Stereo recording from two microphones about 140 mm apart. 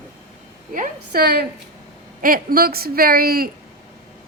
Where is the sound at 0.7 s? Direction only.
80° right.